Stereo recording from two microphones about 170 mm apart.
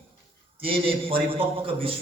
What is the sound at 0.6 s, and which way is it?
Speech, 35° right (ahead or behind).